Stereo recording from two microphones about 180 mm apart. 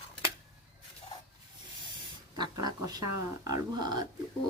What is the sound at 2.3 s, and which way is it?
Speech, 20° right (ahead or behind).